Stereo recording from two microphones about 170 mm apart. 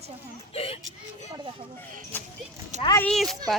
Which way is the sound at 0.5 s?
35° left (ahead or behind).